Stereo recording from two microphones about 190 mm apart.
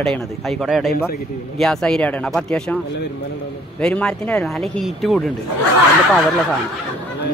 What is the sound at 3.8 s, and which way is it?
Speech, 5° left (ahead or behind).